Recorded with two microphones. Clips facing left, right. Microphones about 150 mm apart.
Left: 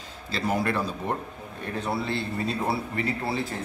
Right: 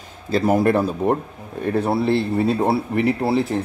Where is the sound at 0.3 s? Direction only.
50° right (ahead or behind).